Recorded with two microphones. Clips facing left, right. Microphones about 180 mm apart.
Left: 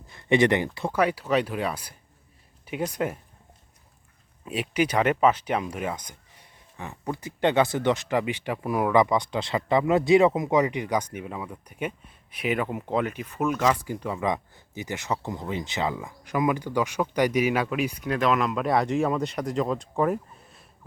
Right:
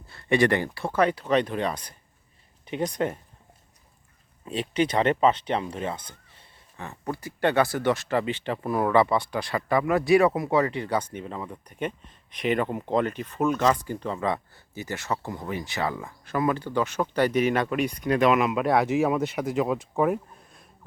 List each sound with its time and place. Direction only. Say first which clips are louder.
0.1 s speech: left 1 dB; 20° left (ahead or behind)
4.4 s speech: even; 10° left (ahead or behind)
4.9 s speech: even; 30° right (ahead or behind)
5.4 s speech: even; 10° left (ahead or behind)